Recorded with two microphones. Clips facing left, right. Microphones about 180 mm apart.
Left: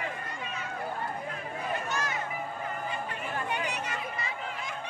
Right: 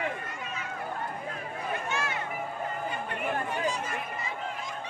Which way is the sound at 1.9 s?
40° left (ahead or behind).